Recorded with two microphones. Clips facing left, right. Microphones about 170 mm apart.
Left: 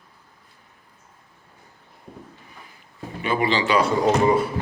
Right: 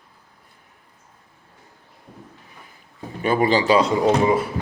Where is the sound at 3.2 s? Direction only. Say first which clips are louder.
Right 4 dB; 45° right (ahead or behind).